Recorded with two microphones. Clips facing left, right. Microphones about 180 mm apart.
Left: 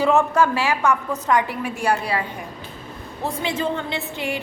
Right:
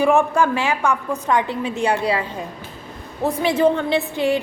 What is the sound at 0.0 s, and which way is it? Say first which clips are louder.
A woman's voice: right 1 dB; 15° right (ahead or behind).